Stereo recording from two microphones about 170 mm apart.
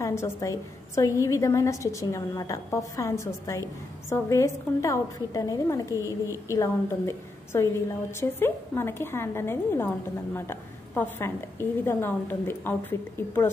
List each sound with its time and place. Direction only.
0.0 s a woman's voice: 15° left (ahead or behind)
5.9 s a woman's voice: 15° right (ahead or behind)
6.5 s a woman's voice: 15° left (ahead or behind)